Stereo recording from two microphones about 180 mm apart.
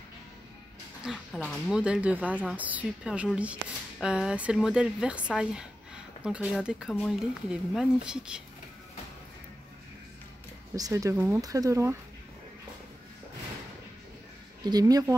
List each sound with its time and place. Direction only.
1.0 s speech: centre (ahead or behind)
10.8 s speech: 20° right (ahead or behind)
14.6 s speech: 20° right (ahead or behind)